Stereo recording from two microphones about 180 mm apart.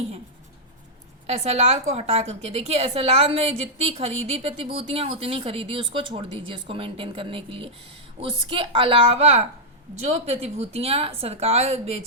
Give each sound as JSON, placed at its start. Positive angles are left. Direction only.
{"t": 1.3, "sound": "a woman's voice", "side_deg": -35}